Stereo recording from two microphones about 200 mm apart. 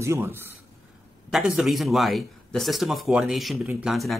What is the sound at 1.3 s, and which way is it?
A man's voice, centre (ahead or behind).